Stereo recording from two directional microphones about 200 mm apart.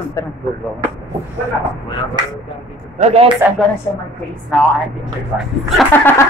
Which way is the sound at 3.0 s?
30° right (ahead or behind).